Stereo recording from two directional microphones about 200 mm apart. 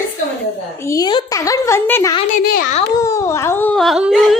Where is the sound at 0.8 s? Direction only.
20° left (ahead or behind); by 4.3 s centre (ahead or behind).